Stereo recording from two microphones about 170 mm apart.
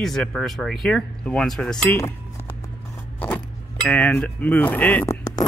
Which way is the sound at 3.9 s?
10° left (ahead or behind).